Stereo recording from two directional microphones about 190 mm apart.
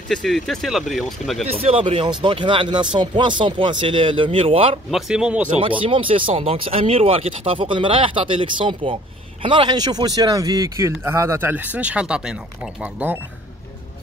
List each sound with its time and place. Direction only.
0.1 s speech: centre (ahead or behind)
1.6 s speech: 30° right (ahead or behind)
4.9 s speech: 5° right (ahead or behind)
5.6 s speech: 30° right (ahead or behind); by 13.2 s 10° right (ahead or behind)